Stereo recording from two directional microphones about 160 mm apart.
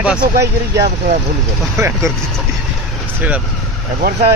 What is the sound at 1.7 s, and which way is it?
Speech, 15° right (ahead or behind).